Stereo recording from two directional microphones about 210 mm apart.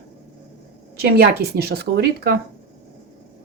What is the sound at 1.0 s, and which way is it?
Speech, 50° right (ahead or behind).